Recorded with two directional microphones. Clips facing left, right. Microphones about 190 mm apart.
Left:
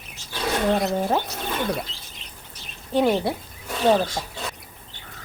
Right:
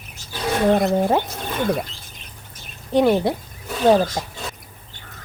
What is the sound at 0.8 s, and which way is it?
Gargling, 50° right (ahead or behind).